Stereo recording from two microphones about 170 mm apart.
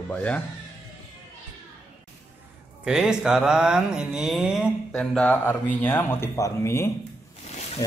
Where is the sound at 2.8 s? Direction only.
5° right (ahead or behind).